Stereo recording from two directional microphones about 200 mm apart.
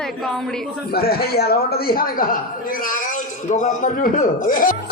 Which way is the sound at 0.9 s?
50° left (ahead or behind).